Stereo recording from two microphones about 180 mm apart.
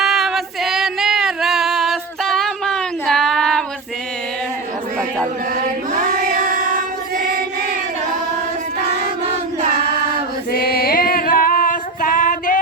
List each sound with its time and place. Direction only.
0.0 s female singing: centre (ahead or behind)
5.5 s choir: 45° right (ahead or behind)
10.5 s female singing: 55° left (ahead or behind)